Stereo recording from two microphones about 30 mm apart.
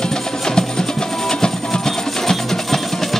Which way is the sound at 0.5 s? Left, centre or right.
Left.